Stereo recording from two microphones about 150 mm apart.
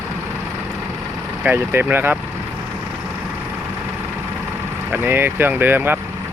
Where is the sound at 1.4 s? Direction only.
15° right (ahead or behind).